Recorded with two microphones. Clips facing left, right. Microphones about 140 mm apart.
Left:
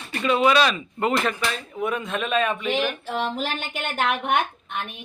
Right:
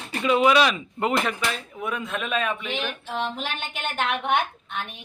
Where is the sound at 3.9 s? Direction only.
45° left (ahead or behind).